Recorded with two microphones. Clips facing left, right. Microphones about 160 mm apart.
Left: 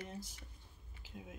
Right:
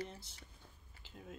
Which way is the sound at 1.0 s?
10° left (ahead or behind).